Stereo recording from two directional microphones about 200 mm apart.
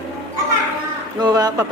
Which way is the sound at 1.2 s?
20° right (ahead or behind).